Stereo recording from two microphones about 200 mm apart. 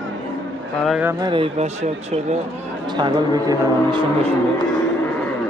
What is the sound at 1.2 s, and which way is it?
Speech, 25° right (ahead or behind).